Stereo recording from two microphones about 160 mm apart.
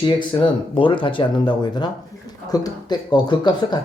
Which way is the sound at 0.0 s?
30° left (ahead or behind).